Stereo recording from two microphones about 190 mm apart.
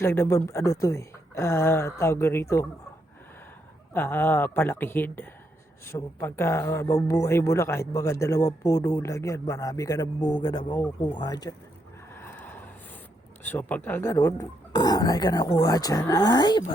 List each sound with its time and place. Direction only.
0.0 s speech: 15° left (ahead or behind)
3.9 s speech: 10° left (ahead or behind)
12.1 s vehicle: 10° left (ahead or behind)
13.4 s speech: 10° left (ahead or behind)